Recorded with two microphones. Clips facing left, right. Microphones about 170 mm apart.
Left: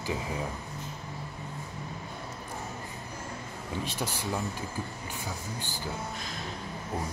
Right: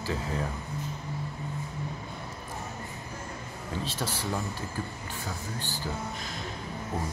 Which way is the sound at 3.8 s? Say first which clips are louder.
Right 1 dB; 15° left (ahead or behind).